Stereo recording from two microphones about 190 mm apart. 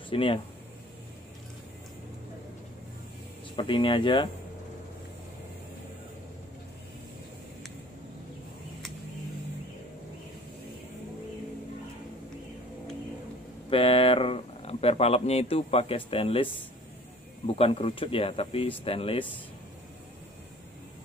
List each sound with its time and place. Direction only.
0.1 s speech: 30° left (ahead or behind)
3.5 s speech: 25° left (ahead or behind)
13.7 s speech: 30° left (ahead or behind)
17.5 s speech: 30° left (ahead or behind)